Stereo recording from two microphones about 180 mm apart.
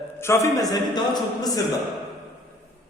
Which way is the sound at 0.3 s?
15° left (ahead or behind).